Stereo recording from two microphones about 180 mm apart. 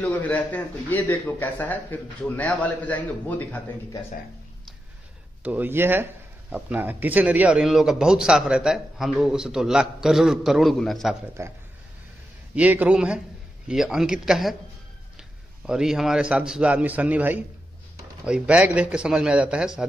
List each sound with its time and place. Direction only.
0.0 s speech: 10° left (ahead or behind)
5.4 s a man's voice: 10° right (ahead or behind)
11.4 s a man's voice: 15° right (ahead or behind)